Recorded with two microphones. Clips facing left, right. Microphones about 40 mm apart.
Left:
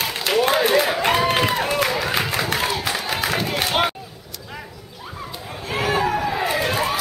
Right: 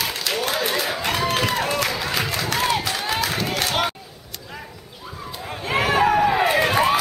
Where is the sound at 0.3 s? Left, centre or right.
Centre.